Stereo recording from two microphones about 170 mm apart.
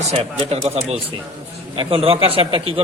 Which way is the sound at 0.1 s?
35° right (ahead or behind).